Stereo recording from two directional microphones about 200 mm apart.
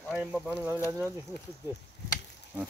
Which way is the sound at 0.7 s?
10° left (ahead or behind).